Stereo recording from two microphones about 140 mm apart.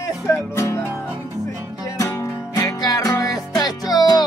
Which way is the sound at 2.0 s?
20° left (ahead or behind).